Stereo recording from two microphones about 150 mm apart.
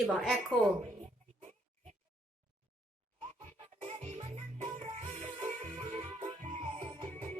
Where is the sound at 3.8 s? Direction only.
45° right (ahead or behind).